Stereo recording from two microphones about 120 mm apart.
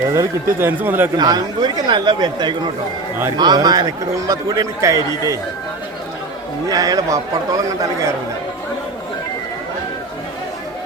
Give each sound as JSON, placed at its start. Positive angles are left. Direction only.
{"t": 0.1, "sound": "speech", "side_deg": -20}
{"t": 1.1, "sound": "a man's voice", "side_deg": -35}
{"t": 6.7, "sound": "speech", "side_deg": -30}